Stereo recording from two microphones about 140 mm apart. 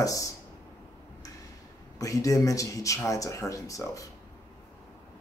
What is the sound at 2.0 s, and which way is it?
Speech, 25° left (ahead or behind).